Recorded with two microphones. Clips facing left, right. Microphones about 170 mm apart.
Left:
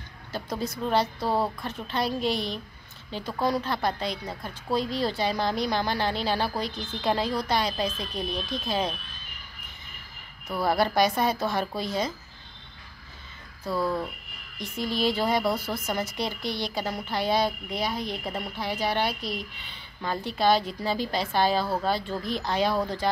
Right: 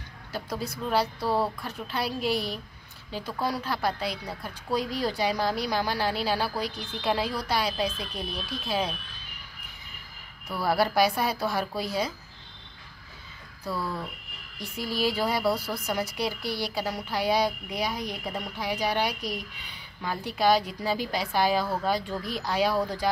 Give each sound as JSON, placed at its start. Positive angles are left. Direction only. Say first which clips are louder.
{"t": 1.2, "sound": "speech", "louder": "even", "side_deg": 15}
{"t": 1.9, "sound": "a woman's voice", "louder": "left 2 dB", "side_deg": -5}
{"t": 10.7, "sound": "a woman's voice", "louder": "even", "side_deg": -10}
{"t": 13.7, "sound": "speech", "louder": "left 5 dB", "side_deg": 15}
{"t": 14.8, "sound": "a woman's voice", "louder": "left 1 dB", "side_deg": -10}